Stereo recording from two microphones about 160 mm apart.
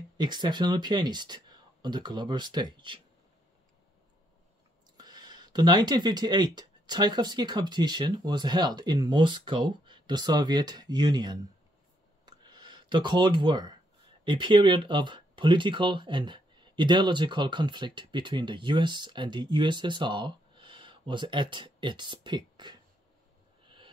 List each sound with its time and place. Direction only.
0.2 s speech: 25° right (ahead or behind)
4.9 s speech: 25° right (ahead or behind)
12.3 s a sound: 25° right (ahead or behind)
14.2 s speech: 30° right (ahead or behind)